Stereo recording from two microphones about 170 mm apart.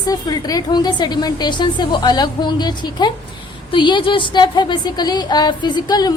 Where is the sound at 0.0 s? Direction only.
20° left (ahead or behind).